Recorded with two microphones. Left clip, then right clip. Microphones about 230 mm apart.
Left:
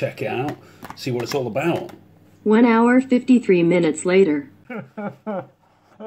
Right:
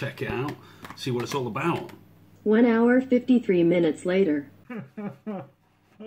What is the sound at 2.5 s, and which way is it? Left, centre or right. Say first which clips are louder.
Speech: left 5 dB; left.